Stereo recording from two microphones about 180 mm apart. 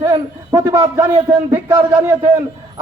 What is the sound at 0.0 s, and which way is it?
A man's voice, 20° right (ahead or behind).